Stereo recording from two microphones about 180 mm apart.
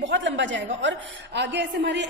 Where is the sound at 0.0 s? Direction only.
85° right.